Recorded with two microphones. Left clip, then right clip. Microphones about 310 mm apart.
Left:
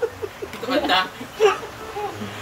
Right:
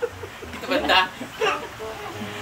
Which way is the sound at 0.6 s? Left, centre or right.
Centre.